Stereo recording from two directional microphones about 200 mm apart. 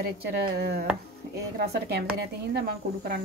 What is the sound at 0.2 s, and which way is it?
Speech, 50° right (ahead or behind).